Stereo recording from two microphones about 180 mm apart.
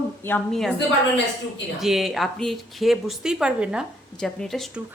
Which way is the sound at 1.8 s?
Centre (ahead or behind).